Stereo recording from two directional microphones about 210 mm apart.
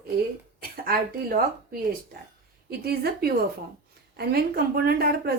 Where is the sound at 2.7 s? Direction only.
45° right (ahead or behind).